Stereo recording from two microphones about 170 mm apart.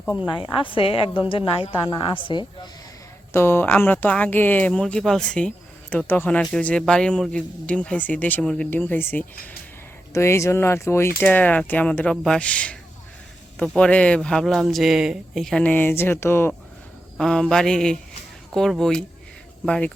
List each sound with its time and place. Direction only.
0.0 s a woman's voice: 5° right (ahead or behind)
0.3 s a woman's voice: 25° left (ahead or behind)
3.3 s speech: 15° left (ahead or behind)